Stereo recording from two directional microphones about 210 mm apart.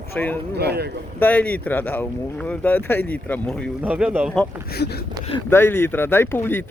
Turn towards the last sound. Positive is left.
turn(degrees=10)  # may be behind; listen again after turning